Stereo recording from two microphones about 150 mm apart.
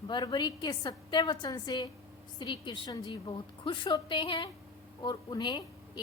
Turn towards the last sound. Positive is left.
turn(degrees=30)  # may be behind; listen again after turning